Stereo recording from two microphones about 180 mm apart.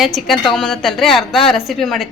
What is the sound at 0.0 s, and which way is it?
A woman's voice, centre (ahead or behind).